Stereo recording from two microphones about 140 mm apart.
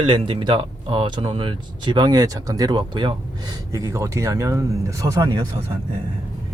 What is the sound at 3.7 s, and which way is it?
Speech, 20° right (ahead or behind).